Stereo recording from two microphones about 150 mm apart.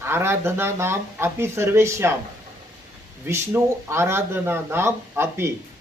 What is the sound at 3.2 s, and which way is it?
Speech, 15° right (ahead or behind).